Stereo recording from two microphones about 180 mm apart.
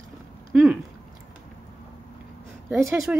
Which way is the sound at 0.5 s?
Centre (ahead or behind).